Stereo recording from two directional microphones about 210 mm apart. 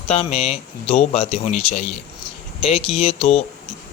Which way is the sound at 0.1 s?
30° left (ahead or behind).